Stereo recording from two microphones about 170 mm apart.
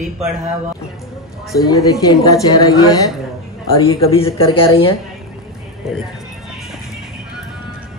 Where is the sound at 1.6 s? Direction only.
20° left (ahead or behind).